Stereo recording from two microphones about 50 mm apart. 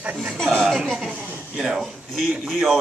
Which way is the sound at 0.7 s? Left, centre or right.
Centre.